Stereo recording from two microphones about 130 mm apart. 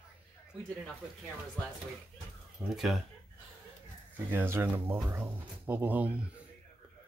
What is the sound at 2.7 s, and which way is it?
Speech, centre (ahead or behind).